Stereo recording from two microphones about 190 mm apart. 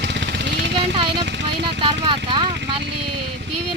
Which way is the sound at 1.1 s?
65° right (ahead or behind).